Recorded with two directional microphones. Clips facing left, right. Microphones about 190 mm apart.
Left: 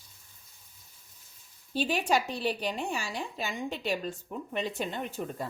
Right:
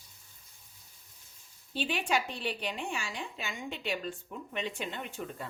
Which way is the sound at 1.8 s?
40° left (ahead or behind).